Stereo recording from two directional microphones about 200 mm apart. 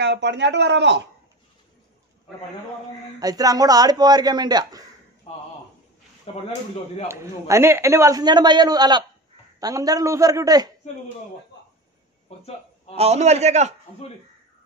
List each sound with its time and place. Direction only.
0.0 s speech: 60° right (ahead or behind)
3.2 s a man's voice: 20° right (ahead or behind)
5.3 s speech: 25° left (ahead or behind)
7.1 s a man's voice: 15° right (ahead or behind)
12.3 s a sound: 30° left (ahead or behind)
12.9 s a man's voice: 30° right (ahead or behind)